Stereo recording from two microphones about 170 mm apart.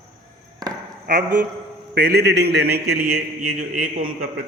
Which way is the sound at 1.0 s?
80° right.